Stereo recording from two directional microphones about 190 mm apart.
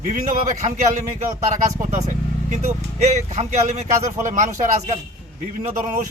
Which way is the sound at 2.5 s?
35° right (ahead or behind).